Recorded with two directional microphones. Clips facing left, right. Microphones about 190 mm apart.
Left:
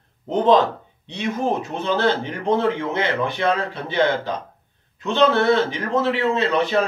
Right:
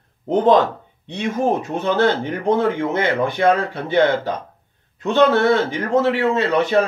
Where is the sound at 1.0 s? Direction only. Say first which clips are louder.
Right 3 dB; 50° right (ahead or behind).